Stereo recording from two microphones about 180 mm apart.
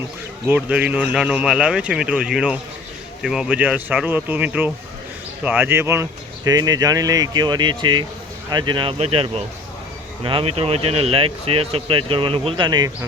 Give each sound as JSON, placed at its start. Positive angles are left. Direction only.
{"t": 0.4, "sound": "speech", "side_deg": -5}